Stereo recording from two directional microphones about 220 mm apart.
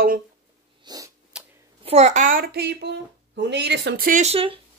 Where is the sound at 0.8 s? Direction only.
15° right (ahead or behind).